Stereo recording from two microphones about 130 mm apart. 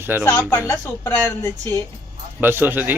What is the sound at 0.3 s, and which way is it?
Speech, 20° left (ahead or behind).